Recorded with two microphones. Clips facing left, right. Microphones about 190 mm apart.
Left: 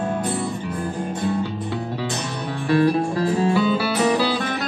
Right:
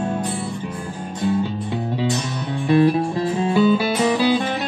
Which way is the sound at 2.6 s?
20° right (ahead or behind).